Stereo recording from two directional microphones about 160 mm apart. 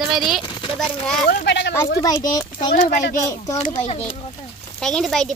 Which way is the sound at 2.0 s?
25° left (ahead or behind).